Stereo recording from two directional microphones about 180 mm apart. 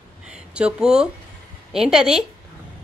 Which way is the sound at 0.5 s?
5° right (ahead or behind).